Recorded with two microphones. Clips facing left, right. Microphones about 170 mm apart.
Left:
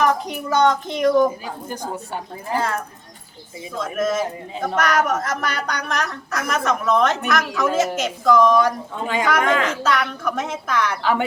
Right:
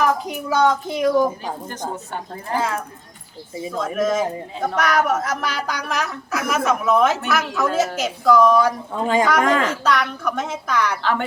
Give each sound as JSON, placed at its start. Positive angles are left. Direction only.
{"t": 0.0, "sound": "speech", "side_deg": -5}
{"t": 2.5, "sound": "speech", "side_deg": 0}
{"t": 9.4, "sound": "speech", "side_deg": -40}
{"t": 9.8, "sound": "speech", "side_deg": 5}